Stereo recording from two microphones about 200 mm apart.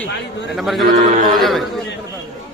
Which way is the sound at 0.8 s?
40° right (ahead or behind).